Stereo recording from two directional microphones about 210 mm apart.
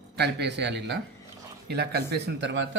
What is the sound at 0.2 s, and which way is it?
Speech, 55° right (ahead or behind).